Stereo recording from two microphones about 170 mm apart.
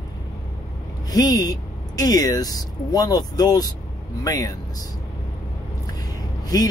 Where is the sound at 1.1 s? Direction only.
20° left (ahead or behind).